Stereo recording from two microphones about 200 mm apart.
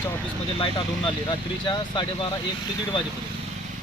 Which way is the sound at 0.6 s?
25° left (ahead or behind).